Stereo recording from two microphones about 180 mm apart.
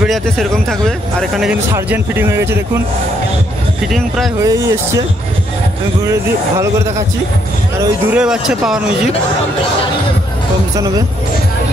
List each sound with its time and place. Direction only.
0.0 s speech: centre (ahead or behind)
1.7 s speech: 10° right (ahead or behind)
4.4 s speech: 20° right (ahead or behind)
8.1 s speech: 5° right (ahead or behind)